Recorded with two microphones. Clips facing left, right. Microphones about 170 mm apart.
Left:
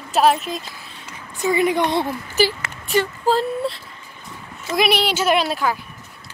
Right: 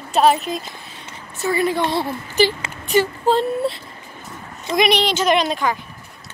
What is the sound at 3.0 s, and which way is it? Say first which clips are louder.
Speech: right 2 dB; centre (ahead or behind).